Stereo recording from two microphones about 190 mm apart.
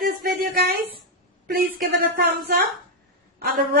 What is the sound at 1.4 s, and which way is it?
Speech, 50° right (ahead or behind).